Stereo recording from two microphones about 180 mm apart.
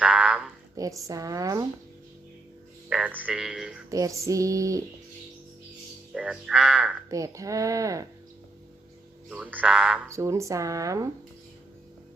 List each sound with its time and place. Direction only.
0.0 s a sound: 10° right (ahead or behind)
0.8 s speech: 20° right (ahead or behind)
2.9 s speech: 10° right (ahead or behind)
3.8 s speech: 15° right (ahead or behind)
6.1 s speech: 5° right (ahead or behind)
7.1 s speech: 20° right (ahead or behind)
9.3 s speech: 10° right (ahead or behind)
10.1 s speech: 15° right (ahead or behind)